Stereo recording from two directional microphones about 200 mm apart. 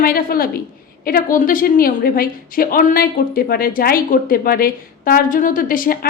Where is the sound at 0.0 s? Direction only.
45° left (ahead or behind).